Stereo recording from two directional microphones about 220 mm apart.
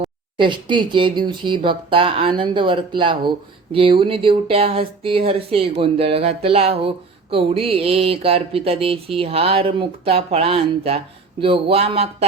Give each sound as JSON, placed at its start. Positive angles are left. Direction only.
{"t": 0.0, "sound": "speech", "side_deg": -20}